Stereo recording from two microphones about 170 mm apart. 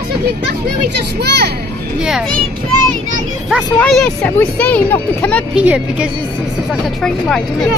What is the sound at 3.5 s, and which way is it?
Speech, centre (ahead or behind).